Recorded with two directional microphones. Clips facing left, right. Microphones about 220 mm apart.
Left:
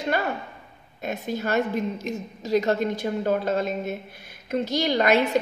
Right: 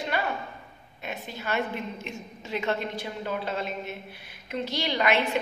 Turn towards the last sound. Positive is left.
turn(degrees=45)  # may be behind; listen again after turning